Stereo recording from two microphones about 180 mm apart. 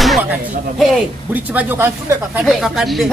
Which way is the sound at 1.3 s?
10° right (ahead or behind).